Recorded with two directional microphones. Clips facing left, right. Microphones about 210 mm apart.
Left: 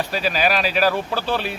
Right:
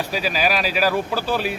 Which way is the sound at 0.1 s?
10° right (ahead or behind).